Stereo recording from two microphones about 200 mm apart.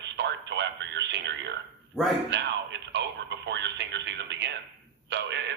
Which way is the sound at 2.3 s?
60° right (ahead or behind).